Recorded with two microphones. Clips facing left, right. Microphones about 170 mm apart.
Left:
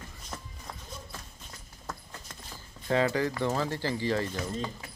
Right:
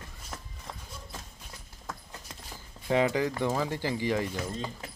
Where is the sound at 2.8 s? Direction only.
15° right (ahead or behind).